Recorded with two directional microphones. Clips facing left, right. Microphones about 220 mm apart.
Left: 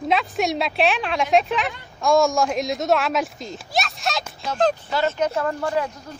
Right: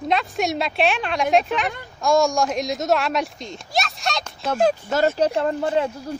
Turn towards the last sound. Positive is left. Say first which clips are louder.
# right 2 dB
turn(degrees=-20)  # may be behind; listen again after turning